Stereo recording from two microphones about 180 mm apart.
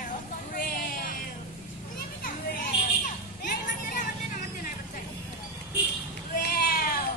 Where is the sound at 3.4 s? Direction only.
50° left (ahead or behind).